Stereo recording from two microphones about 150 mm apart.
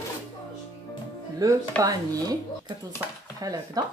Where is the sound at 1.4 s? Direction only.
25° right (ahead or behind).